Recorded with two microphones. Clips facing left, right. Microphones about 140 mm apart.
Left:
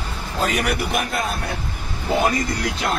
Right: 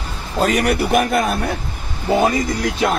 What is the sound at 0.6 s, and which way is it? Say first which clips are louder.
Speech: right 6 dB; 50° right (ahead or behind).